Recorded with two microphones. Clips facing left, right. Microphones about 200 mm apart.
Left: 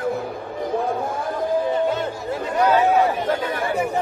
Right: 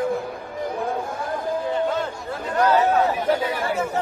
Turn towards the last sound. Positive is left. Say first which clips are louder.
# left 1 dB
turn(degrees=10)  # may be behind; listen again after turning